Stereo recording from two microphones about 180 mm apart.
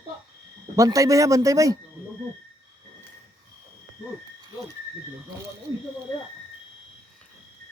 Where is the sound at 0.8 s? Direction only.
20° right (ahead or behind).